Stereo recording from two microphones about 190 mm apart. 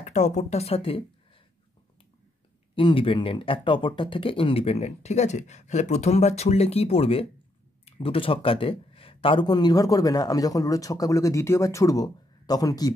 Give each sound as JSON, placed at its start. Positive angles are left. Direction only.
{"t": 0.0, "sound": "speech", "side_deg": 35}
{"t": 2.7, "sound": "speech", "side_deg": 30}